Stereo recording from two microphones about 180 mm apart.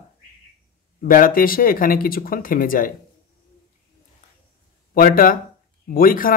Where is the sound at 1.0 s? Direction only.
50° left (ahead or behind).